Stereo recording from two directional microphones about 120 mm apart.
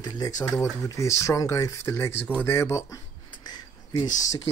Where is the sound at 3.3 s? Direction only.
35° left (ahead or behind).